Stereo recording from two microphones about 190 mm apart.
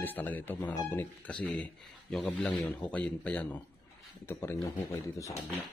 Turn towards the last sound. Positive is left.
turn(degrees=15)  # may be behind; listen again after turning